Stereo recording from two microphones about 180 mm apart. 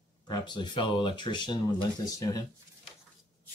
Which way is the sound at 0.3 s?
25° left (ahead or behind).